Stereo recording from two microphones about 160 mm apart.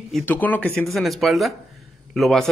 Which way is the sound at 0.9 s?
Centre (ahead or behind).